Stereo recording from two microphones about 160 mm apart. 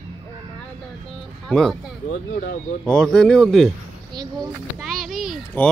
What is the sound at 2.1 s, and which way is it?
Speech, 55° left (ahead or behind).